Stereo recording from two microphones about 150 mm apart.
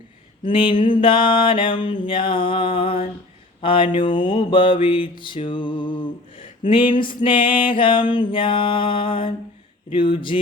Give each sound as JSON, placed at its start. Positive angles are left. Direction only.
{"t": 0.4, "sound": "mantra", "side_deg": 35}